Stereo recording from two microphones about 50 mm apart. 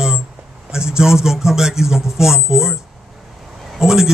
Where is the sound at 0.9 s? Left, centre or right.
Centre.